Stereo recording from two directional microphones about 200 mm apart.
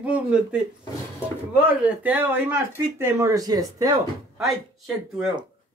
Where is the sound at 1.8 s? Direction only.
10° right (ahead or behind).